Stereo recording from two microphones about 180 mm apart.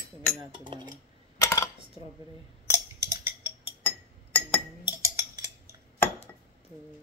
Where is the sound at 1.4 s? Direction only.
20° left (ahead or behind).